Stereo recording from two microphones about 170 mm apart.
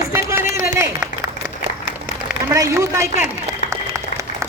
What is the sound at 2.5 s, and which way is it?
Speech, 15° right (ahead or behind).